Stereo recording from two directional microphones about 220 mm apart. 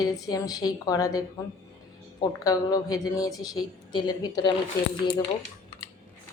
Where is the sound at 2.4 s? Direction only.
15° left (ahead or behind).